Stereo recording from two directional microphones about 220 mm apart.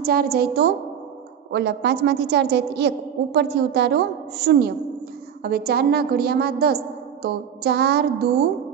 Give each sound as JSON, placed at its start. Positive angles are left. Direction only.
{"t": 0.0, "sound": "a woman's voice", "side_deg": -45}